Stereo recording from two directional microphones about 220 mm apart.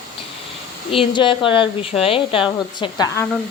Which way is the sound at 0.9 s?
25° left (ahead or behind).